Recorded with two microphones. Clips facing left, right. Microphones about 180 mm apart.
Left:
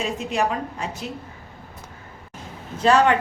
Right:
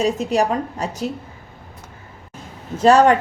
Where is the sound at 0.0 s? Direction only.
40° right (ahead or behind).